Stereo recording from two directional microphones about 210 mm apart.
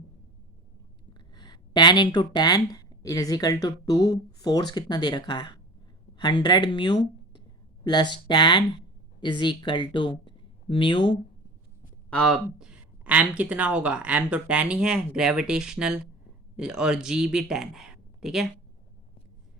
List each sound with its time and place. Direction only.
1.4 s speech: 20° left (ahead or behind)
12.1 s speech: centre (ahead or behind)